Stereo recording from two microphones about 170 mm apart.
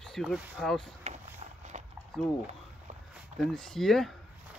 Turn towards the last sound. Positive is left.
turn(degrees=0)  # may be behind; listen again after turning